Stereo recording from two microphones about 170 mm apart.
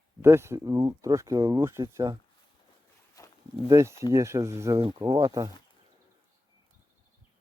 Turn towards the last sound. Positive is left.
turn(degrees=-20)  # may be behind; listen again after turning